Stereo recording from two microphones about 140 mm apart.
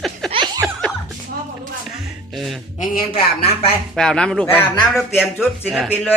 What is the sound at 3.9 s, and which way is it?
A man's voice, 5° left (ahead or behind).